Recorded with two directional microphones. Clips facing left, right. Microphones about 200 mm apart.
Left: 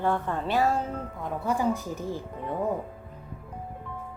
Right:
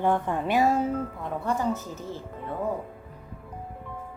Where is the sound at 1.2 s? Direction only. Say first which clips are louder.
Left 6 dB; 5° left (ahead or behind).